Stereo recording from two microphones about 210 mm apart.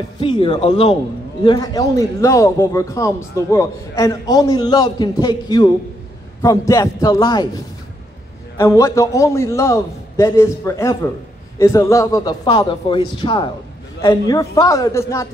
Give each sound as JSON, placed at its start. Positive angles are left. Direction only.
{"t": 0.2, "sound": "speech", "side_deg": 20}
{"t": 1.4, "sound": "a man's voice", "side_deg": 20}
{"t": 8.5, "sound": "a man's voice", "side_deg": 15}